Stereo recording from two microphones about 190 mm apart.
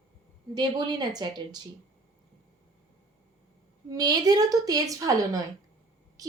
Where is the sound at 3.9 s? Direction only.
20° right (ahead or behind).